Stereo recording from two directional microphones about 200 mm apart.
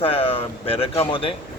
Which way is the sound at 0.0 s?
25° left (ahead or behind).